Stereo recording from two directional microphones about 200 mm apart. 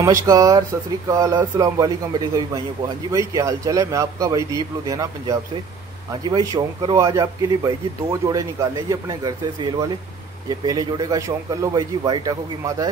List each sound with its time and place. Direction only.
0.0 s speech: 15° right (ahead or behind)